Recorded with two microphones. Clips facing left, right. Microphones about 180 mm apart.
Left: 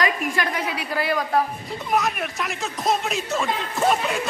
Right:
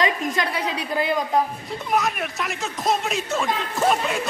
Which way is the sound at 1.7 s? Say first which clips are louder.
Even; centre (ahead or behind).